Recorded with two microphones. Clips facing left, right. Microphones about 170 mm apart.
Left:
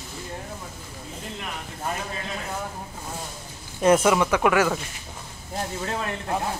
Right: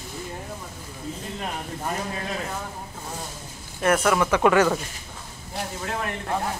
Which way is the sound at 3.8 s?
20° left (ahead or behind).